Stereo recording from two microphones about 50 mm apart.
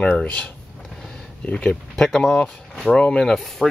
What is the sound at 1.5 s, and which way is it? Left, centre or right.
Speech, left.